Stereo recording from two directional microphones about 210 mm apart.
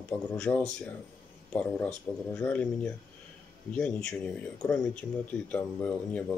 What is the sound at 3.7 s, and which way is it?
Speech, 5° left (ahead or behind).